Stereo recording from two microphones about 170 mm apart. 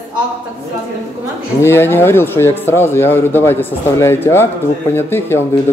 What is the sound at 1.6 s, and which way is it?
Speech, 15° left (ahead or behind).